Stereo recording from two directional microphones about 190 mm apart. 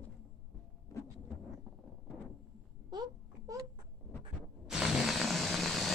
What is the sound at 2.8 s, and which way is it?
Wail, 20° right (ahead or behind).